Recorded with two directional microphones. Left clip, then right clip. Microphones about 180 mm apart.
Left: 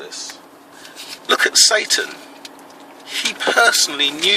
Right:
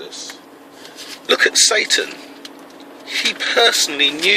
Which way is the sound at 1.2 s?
25° left (ahead or behind).